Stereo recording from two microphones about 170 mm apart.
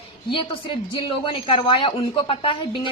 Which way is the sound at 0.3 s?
30° left (ahead or behind).